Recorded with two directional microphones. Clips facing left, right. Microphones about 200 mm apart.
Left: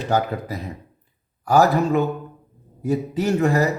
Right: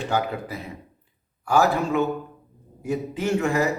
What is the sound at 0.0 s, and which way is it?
Speech, 40° left (ahead or behind).